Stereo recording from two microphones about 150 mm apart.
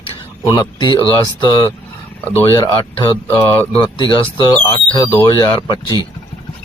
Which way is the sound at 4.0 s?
35° left (ahead or behind).